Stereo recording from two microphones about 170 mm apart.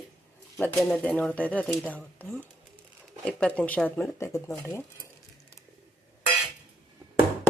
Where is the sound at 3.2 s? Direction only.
5° left (ahead or behind).